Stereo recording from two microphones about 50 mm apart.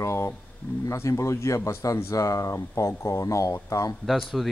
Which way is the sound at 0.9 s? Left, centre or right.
Left.